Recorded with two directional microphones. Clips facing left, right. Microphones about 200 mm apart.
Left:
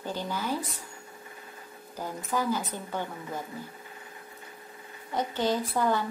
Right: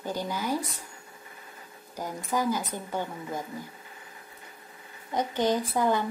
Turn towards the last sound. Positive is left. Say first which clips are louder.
# right 1 dB
turn(degrees=-15)  # may be behind; listen again after turning